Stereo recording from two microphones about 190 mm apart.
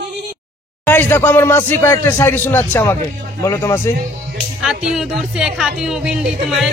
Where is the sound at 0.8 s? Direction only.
10° left (ahead or behind).